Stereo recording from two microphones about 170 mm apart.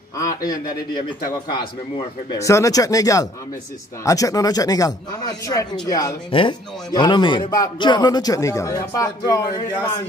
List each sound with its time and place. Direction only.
0.5 s a man's voice: 20° left (ahead or behind)